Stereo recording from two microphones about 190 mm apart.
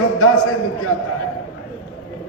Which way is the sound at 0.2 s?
90° left.